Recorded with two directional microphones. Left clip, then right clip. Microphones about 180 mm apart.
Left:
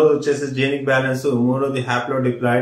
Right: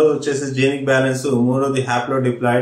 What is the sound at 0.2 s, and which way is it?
A man's voice, 5° right (ahead or behind).